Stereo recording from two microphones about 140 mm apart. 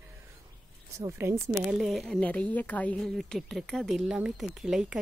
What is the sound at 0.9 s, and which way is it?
Speech, 20° right (ahead or behind).